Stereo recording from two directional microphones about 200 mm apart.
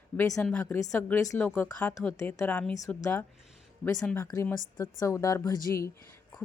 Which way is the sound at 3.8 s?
5° left (ahead or behind).